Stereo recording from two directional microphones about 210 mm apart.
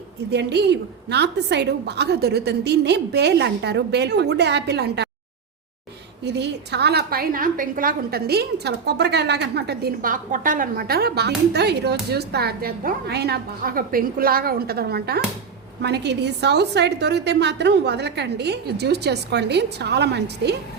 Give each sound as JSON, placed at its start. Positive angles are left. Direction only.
{"t": 0.3, "sound": "a woman's voice", "side_deg": -55}
{"t": 6.2, "sound": "a woman's voice", "side_deg": -55}